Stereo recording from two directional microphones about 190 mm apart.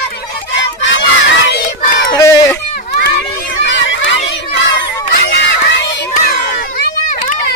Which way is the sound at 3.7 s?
75° left (ahead or behind).